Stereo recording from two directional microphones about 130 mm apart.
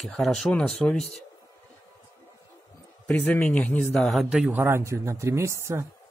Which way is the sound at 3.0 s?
10° left (ahead or behind).